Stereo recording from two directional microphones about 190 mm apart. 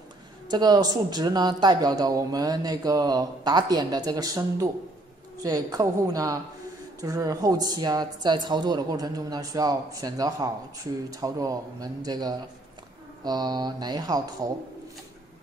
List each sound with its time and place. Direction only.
0.5 s speech: 20° right (ahead or behind)